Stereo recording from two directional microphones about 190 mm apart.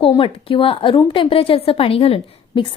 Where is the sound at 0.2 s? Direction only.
30° left (ahead or behind).